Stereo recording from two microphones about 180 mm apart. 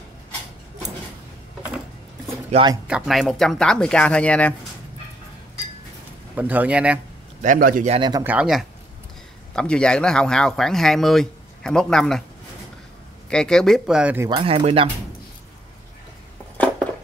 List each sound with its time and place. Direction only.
2.5 s speech: 35° right (ahead or behind)
2.9 s speech: centre (ahead or behind)
6.3 s speech: 10° right (ahead or behind)
7.4 s a man's voice: 50° right (ahead or behind)
7.9 s speech: 25° right (ahead or behind)
8.2 s speech: 10° right (ahead or behind)
13.3 s speech: 5° left (ahead or behind)
14.3 s speech: 30° right (ahead or behind)